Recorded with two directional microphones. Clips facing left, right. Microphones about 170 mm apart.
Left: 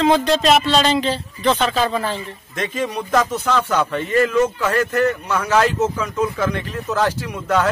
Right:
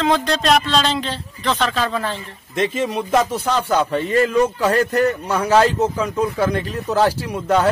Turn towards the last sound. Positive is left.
turn(degrees=-35)  # may be behind; listen again after turning